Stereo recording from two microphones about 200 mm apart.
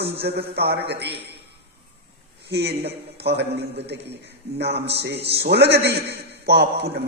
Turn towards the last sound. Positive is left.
turn(degrees=-55)  # may be behind; listen again after turning